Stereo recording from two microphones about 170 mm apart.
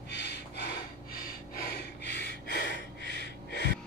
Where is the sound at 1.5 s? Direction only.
70° left (ahead or behind); by 3.7 s 85° left.